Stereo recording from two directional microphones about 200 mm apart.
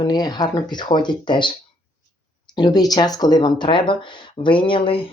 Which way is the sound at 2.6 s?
20° left (ahead or behind).